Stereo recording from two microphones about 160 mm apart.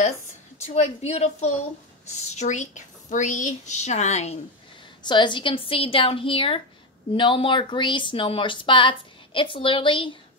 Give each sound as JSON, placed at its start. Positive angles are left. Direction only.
{"t": 0.7, "sound": "a woman's voice", "side_deg": 45}
{"t": 5.0, "sound": "speech", "side_deg": 30}